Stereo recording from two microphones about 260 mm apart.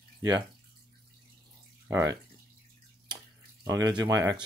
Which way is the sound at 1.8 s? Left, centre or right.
Centre.